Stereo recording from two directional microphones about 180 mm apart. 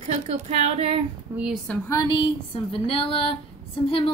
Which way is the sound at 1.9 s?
20° left (ahead or behind).